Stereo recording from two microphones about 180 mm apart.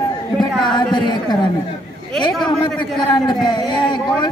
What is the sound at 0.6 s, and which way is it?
Speech, 25° left (ahead or behind).